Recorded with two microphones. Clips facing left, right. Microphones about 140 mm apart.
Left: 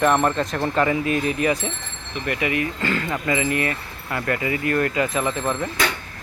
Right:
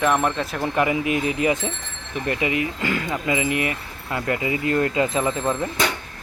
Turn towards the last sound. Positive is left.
turn(degrees=-20)  # may be behind; listen again after turning